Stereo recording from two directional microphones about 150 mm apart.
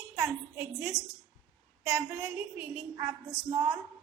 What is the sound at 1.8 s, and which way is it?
A woman's voice, 20° right (ahead or behind).